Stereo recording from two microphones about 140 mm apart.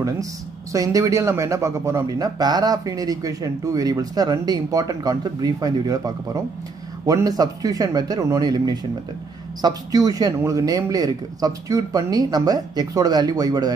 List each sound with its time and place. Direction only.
0.7 s speech: 25° right (ahead or behind)